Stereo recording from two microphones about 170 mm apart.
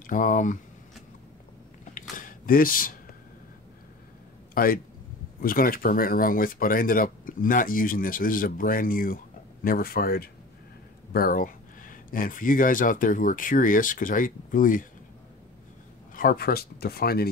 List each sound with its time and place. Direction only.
0.0 s speech: 50° left (ahead or behind)
2.0 s a sound: 50° left (ahead or behind)
4.6 s speech: 60° left (ahead or behind)
16.2 s speech: 60° left (ahead or behind)